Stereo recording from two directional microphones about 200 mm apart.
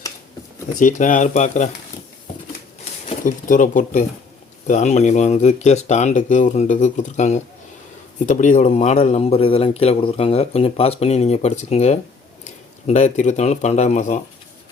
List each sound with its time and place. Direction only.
0.8 s a man's voice: 40° left (ahead or behind)
3.2 s a man's voice: 40° left (ahead or behind)